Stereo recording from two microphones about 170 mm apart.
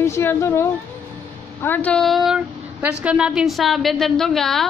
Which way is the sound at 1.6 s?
10° left (ahead or behind).